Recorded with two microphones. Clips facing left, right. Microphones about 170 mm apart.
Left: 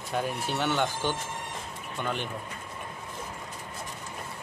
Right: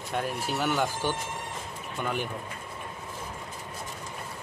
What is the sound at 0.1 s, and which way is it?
Speech, centre (ahead or behind).